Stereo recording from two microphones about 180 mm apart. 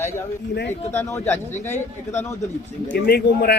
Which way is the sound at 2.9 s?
60° left (ahead or behind).